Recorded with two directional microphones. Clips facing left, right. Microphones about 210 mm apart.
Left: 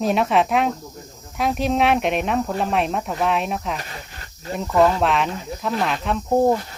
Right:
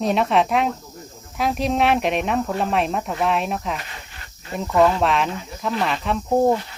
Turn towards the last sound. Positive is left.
turn(degrees=0)  # may be behind; listen again after turning